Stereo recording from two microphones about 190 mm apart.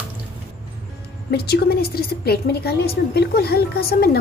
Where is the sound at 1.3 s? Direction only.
55° left (ahead or behind).